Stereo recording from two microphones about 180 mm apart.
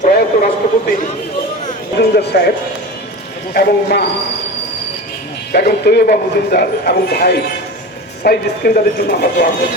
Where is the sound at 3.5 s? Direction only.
60° left (ahead or behind).